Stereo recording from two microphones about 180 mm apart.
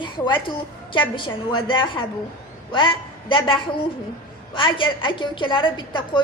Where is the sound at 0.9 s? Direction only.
25° left (ahead or behind).